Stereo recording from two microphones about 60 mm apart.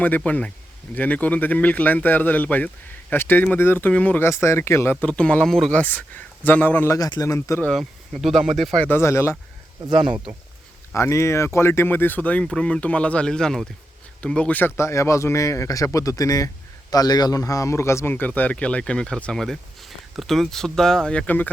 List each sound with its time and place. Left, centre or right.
0.3 s speech: left
3.8 s speech: left
4.2 s speech: left
5.0 s speech: centre
5.5 s speech: centre
5.7 s speech: left
6.8 s a man's voice: left
7.7 s speech: centre
8.9 s speech: left
10.9 s speech: left; by 14.6 s centre
14.8 s a man's voice: left
18.1 s speech: left